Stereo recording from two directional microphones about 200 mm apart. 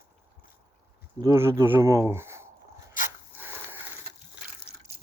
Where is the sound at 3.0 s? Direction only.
40° left (ahead or behind).